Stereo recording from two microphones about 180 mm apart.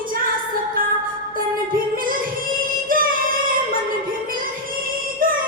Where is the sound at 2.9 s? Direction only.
50° right (ahead or behind).